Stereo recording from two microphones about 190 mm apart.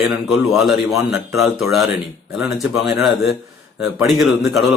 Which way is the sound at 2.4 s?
Centre (ahead or behind).